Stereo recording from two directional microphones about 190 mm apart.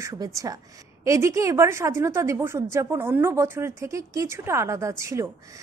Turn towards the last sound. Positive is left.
turn(degrees=-15)  # may be behind; listen again after turning